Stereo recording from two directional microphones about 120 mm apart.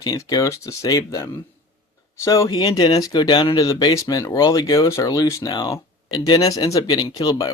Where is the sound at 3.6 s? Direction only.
30° left (ahead or behind).